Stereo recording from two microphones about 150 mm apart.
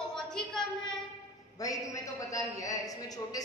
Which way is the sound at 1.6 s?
20° left (ahead or behind).